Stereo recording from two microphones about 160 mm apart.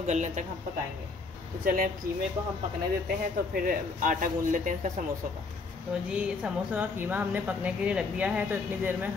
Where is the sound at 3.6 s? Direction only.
60° right (ahead or behind).